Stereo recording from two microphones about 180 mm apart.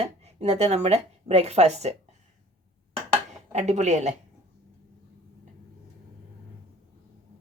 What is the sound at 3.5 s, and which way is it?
Speech, 40° right (ahead or behind).